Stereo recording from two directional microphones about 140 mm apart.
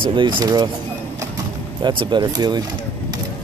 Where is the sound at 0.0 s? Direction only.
35° right (ahead or behind).